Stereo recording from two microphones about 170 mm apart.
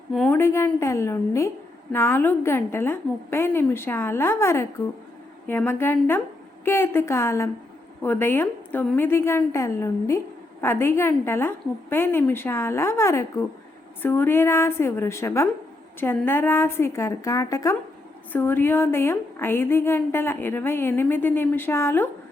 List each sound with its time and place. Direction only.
0.1 s a woman's voice: 5° left (ahead or behind)
0.3 s a woman's voice: 15° left (ahead or behind)